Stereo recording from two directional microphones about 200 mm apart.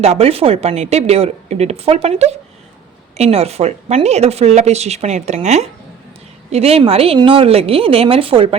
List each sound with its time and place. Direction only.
0.0 s a woman's voice: 30° right (ahead or behind)